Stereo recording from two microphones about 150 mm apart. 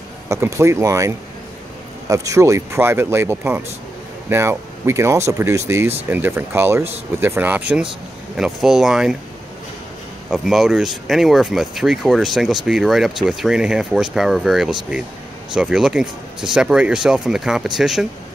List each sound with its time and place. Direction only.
0.3 s speech: 20° right (ahead or behind); by 9.1 s 5° right (ahead or behind)
10.3 s speech: centre (ahead or behind)